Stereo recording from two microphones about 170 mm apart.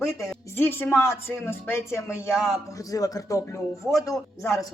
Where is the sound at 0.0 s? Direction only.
15° left (ahead or behind).